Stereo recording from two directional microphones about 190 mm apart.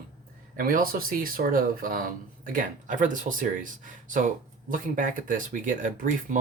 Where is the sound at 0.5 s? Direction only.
50° right (ahead or behind).